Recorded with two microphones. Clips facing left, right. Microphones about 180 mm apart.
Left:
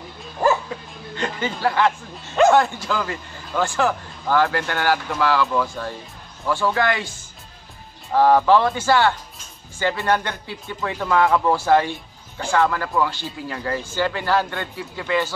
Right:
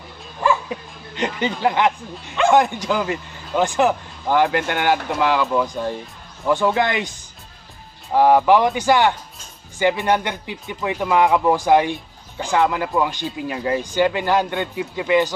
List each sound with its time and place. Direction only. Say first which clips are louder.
0.7 s speech: right 2 dB; 20° right (ahead or behind)